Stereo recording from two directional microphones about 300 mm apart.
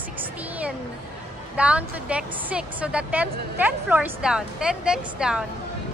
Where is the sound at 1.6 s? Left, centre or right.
Centre.